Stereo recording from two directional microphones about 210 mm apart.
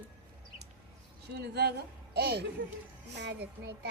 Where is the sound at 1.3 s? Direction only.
50° right (ahead or behind).